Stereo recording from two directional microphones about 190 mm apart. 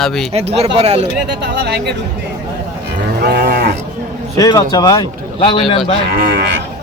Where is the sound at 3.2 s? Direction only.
50° right (ahead or behind).